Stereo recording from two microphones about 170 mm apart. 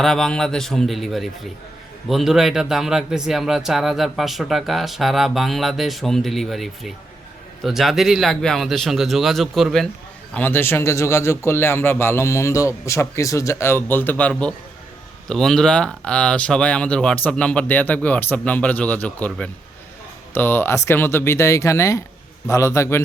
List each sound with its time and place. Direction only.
0.0 s a man's voice: centre (ahead or behind)
10.3 s a man's voice: 10° left (ahead or behind)